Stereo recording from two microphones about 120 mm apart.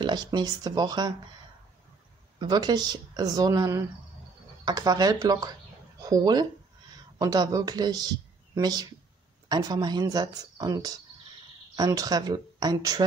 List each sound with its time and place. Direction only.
0.0 s speech: 35° right (ahead or behind)
2.3 s speech: 35° right (ahead or behind)